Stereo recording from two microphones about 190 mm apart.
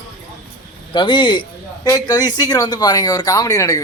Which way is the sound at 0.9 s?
25° left (ahead or behind).